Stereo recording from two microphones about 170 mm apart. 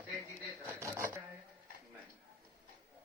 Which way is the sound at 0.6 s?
15° right (ahead or behind).